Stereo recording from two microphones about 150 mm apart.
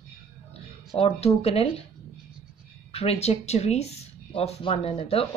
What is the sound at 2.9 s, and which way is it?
Speech, 40° left (ahead or behind).